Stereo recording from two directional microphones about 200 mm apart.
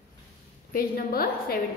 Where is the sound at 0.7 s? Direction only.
45° left (ahead or behind).